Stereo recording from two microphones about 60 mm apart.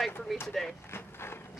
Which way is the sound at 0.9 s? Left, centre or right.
Left.